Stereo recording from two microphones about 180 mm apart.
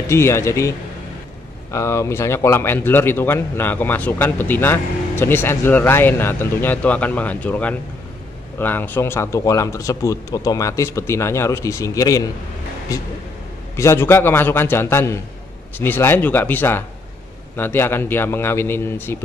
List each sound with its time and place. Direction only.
0.1 s a man's voice: 15° left (ahead or behind)